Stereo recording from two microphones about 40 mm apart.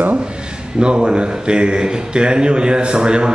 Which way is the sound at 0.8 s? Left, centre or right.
Right.